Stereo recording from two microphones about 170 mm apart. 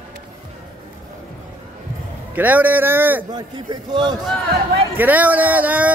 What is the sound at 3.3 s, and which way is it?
Speech, 25° right (ahead or behind).